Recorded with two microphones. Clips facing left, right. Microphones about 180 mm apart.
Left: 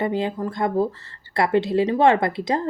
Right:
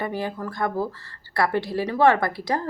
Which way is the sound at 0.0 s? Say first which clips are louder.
Left 5 dB; 20° left (ahead or behind).